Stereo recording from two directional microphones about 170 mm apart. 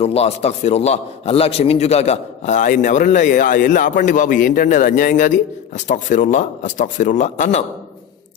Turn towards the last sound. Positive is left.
turn(degrees=45)  # may be behind; listen again after turning